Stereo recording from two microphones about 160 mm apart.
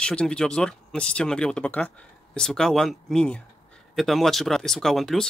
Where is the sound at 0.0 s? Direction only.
5° left (ahead or behind).